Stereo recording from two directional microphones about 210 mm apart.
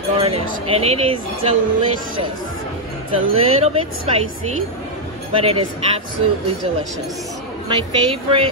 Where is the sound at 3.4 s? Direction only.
25° right (ahead or behind).